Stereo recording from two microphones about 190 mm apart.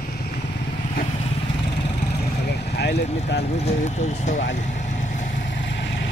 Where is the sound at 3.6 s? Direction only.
35° left (ahead or behind).